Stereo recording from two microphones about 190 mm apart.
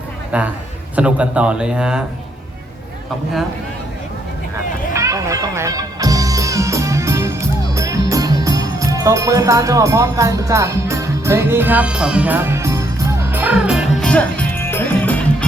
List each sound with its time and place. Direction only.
0.3 s a man's voice: 5° right (ahead or behind)
4.9 s music: 15° right (ahead or behind); by 15.4 s 5° left (ahead or behind)